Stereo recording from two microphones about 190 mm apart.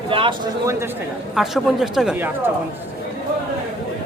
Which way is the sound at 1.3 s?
Centre (ahead or behind).